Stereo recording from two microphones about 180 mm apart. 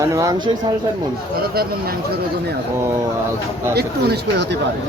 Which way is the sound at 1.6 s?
60° right (ahead or behind).